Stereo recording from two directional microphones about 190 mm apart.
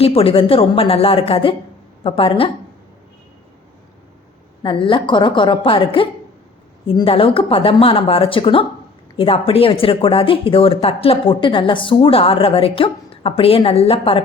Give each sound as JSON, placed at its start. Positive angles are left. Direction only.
{"t": 0.0, "sound": "speech", "side_deg": 30}
{"t": 4.6, "sound": "speech", "side_deg": 25}